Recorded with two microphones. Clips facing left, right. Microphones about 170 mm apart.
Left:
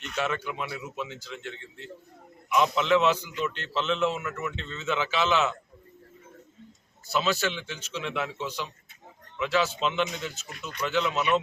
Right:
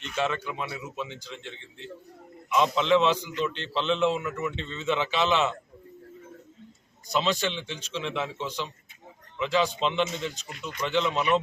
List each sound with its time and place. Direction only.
0.2 s a man's voice: 5° left (ahead or behind)
2.6 s a man's voice: 5° left (ahead or behind)
7.1 s a man's voice: 5° left (ahead or behind)